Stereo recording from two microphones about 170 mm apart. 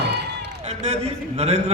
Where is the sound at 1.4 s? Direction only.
40° right (ahead or behind).